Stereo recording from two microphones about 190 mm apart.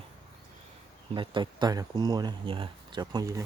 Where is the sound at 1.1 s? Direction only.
25° right (ahead or behind).